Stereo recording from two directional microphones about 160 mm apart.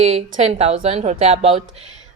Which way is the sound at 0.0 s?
45° right (ahead or behind).